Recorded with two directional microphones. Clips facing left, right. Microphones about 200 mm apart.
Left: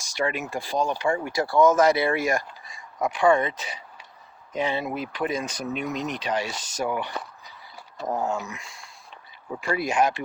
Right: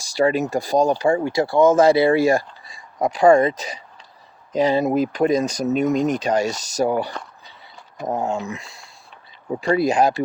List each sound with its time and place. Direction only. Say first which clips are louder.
0.0 s speech: right 9 dB; 35° right (ahead or behind)
7.9 s speech: right 3 dB; 20° right (ahead or behind); by 10.2 s 35° right (ahead or behind)